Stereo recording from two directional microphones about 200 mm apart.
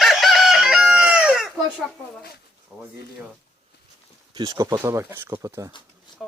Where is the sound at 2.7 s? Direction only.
Centre (ahead or behind).